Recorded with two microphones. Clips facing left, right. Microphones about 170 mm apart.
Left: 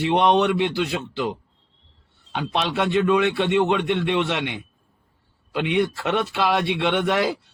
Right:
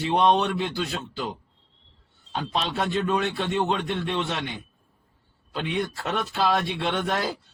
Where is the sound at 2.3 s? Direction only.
70° left (ahead or behind).